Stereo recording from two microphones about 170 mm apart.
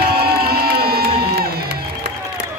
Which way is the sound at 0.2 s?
65° right (ahead or behind).